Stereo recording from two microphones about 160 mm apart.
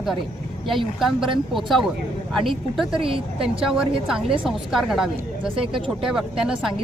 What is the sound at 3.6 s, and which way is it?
Speech, 5° right (ahead or behind).